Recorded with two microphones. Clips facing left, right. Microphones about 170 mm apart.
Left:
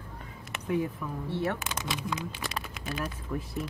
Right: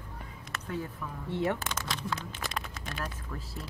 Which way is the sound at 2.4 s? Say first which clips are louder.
Left 1 dB; 5° left (ahead or behind).